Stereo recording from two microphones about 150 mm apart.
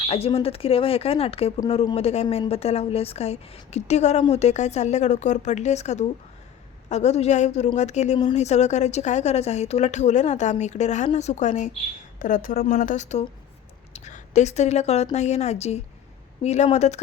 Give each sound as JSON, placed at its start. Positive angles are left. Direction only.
{"t": 0.1, "sound": "a woman's voice", "side_deg": 40}
{"t": 12.2, "sound": "a woman's voice", "side_deg": 65}